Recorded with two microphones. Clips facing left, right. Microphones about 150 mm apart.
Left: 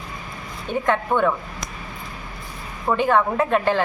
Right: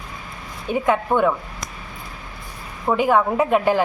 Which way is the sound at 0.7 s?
10° right (ahead or behind).